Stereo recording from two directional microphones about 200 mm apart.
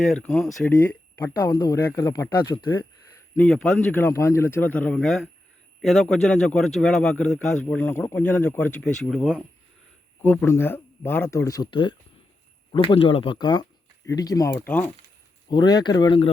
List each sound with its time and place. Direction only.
0.0 s a man's voice: centre (ahead or behind); by 2.8 s 20° left (ahead or behind)
3.3 s a man's voice: 5° left (ahead or behind)
10.2 s a man's voice: 10° left (ahead or behind)
15.4 s speech: 20° left (ahead or behind)